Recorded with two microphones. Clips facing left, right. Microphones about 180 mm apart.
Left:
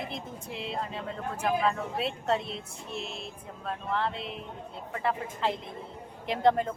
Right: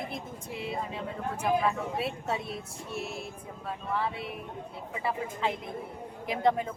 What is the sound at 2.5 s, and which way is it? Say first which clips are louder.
Child singing: right 1 dB; 25° left (ahead or behind).